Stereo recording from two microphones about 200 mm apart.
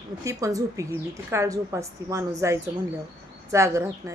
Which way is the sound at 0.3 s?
15° right (ahead or behind).